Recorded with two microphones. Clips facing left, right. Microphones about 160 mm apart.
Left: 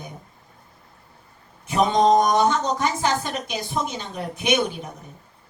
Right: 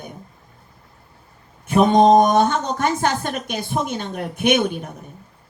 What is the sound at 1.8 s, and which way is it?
Speech, 55° right (ahead or behind).